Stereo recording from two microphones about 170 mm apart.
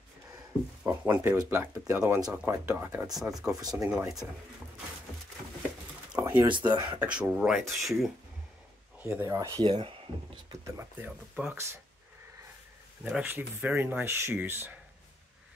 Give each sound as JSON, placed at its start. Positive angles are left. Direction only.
{"t": 0.8, "sound": "speech", "side_deg": -15}
{"t": 6.1, "sound": "a sound", "side_deg": -10}
{"t": 6.7, "sound": "speech", "side_deg": -25}
{"t": 7.0, "sound": "speech", "side_deg": -5}
{"t": 9.0, "sound": "speech", "side_deg": -15}
{"t": 10.8, "sound": "speech", "side_deg": -10}
{"t": 13.0, "sound": "speech", "side_deg": -10}